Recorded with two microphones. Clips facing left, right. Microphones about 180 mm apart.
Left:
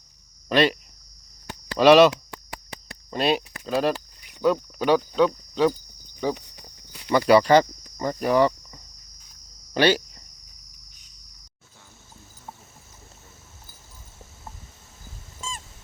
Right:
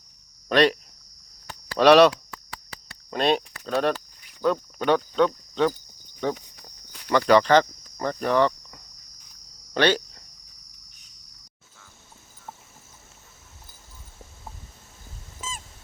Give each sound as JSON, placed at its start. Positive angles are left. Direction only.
{"t": 0.4, "sound": "speech", "side_deg": 0}
{"t": 1.8, "sound": "speech", "side_deg": 0}
{"t": 15.4, "sound": "a sound", "side_deg": -5}